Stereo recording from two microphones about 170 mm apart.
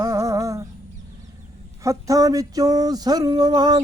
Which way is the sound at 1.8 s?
20° right (ahead or behind).